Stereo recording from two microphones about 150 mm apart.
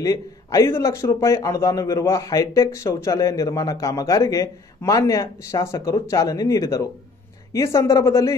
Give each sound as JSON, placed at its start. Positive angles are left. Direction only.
{"t": 0.0, "sound": "a man's voice", "side_deg": 25}